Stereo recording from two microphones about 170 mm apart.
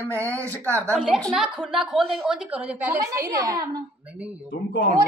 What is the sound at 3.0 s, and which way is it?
Speech, 20° right (ahead or behind).